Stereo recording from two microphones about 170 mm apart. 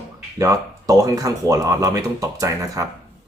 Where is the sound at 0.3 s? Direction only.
20° right (ahead or behind).